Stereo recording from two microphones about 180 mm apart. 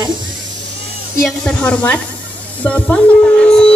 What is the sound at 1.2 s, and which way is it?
A woman's voice, centre (ahead or behind).